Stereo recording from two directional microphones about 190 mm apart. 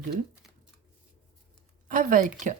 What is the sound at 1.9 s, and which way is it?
Speech, 45° right (ahead or behind).